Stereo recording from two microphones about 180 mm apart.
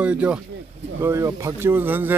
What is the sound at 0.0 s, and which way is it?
Speech, 5° right (ahead or behind).